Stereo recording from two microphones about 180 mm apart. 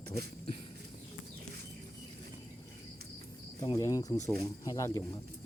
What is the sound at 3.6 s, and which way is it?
Speech, 20° left (ahead or behind).